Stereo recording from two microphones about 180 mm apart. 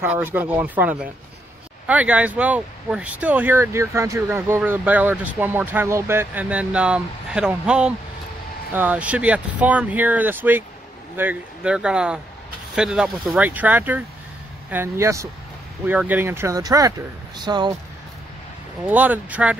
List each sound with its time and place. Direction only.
0.0 s speech: 10° right (ahead or behind)
18.9 s speech: 10° right (ahead or behind)